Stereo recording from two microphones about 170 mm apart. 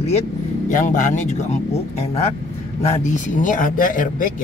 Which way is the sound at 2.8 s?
45° left (ahead or behind).